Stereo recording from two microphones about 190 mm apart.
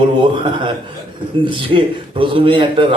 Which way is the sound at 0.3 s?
25° right (ahead or behind).